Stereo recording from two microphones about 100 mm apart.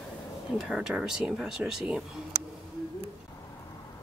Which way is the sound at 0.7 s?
5° right (ahead or behind).